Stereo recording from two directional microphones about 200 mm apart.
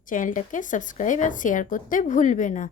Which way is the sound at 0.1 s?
40° left (ahead or behind).